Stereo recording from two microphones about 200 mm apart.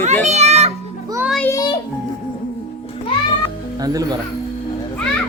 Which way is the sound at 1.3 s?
10° left (ahead or behind).